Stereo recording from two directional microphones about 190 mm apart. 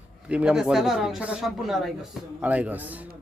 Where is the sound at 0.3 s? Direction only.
5° right (ahead or behind).